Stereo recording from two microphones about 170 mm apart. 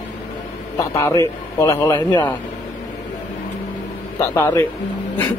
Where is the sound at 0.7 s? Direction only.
20° left (ahead or behind).